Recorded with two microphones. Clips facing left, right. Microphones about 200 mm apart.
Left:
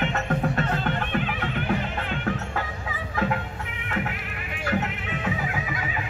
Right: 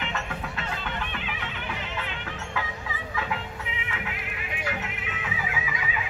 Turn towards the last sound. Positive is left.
turn(degrees=45)  # may be behind; listen again after turning